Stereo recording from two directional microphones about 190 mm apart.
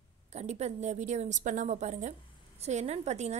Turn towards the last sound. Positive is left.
turn(degrees=-35)  # may be behind; listen again after turning